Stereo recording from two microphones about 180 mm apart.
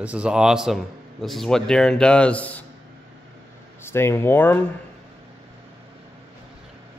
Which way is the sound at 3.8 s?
15° left (ahead or behind).